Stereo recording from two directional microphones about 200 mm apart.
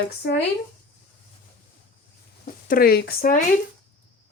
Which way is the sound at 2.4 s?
45° left (ahead or behind).